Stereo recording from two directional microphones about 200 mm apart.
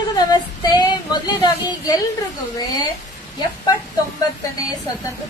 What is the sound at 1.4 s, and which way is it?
Speech, 20° left (ahead or behind).